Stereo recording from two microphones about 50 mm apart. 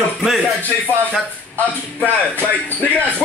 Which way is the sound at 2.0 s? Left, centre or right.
Left.